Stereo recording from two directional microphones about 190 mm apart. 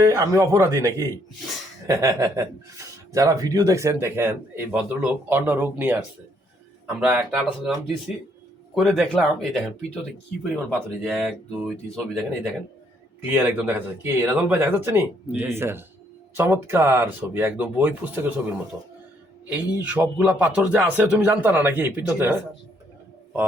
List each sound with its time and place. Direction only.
0.0 s speech: 15° right (ahead or behind)
11.9 s speech: centre (ahead or behind)
19.8 s speech: 10° right (ahead or behind)